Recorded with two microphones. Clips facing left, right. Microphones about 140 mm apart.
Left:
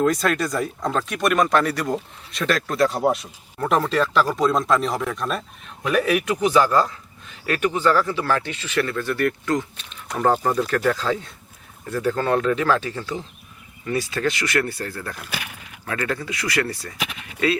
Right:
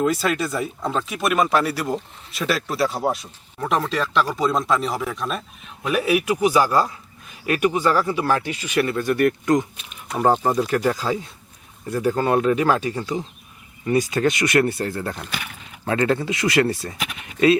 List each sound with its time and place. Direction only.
0.0 s speech: 5° right (ahead or behind); by 16.9 s 25° right (ahead or behind)